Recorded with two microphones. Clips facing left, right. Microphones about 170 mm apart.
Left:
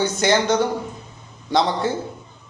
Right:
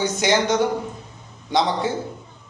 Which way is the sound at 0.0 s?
15° right (ahead or behind).